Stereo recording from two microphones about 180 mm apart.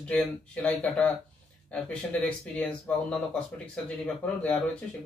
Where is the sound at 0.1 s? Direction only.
10° left (ahead or behind).